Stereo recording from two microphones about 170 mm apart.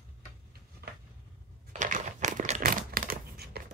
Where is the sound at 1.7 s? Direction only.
45° right (ahead or behind).